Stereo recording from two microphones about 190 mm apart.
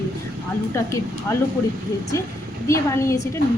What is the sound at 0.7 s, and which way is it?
Speech, 15° left (ahead or behind).